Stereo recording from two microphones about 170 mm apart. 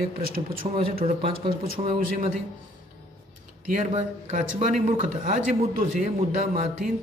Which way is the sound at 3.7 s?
50° right (ahead or behind).